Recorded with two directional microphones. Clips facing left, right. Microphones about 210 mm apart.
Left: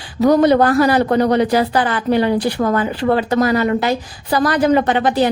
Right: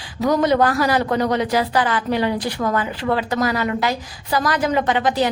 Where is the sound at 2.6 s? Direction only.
35° left (ahead or behind).